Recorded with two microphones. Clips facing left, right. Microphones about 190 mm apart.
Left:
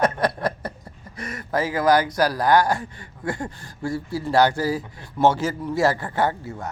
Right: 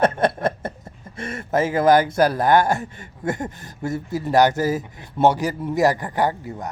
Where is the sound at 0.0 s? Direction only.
25° right (ahead or behind).